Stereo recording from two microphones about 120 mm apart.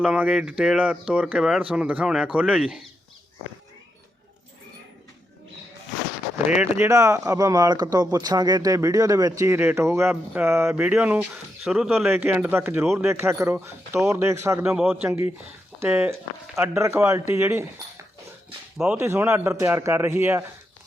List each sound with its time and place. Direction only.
0.0 s speech: 10° right (ahead or behind)
6.7 s speech: 25° right (ahead or behind)
14.6 s speech: 10° right (ahead or behind)